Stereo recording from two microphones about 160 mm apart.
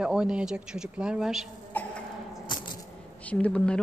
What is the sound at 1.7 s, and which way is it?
Cough, 10° left (ahead or behind).